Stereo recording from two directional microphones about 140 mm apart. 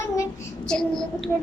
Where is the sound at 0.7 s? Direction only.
5° left (ahead or behind).